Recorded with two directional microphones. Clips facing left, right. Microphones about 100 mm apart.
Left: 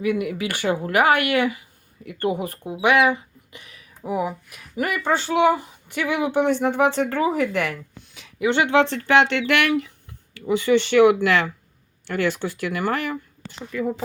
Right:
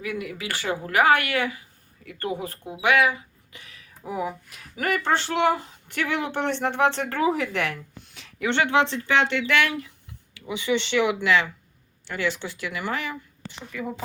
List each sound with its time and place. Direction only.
0.0 s speech: 20° left (ahead or behind)
8.9 s speech: 60° left (ahead or behind)
10.3 s speech: 45° left (ahead or behind)